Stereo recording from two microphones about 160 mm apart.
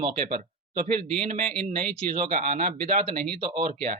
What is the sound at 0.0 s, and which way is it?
Speech, 50° right (ahead or behind).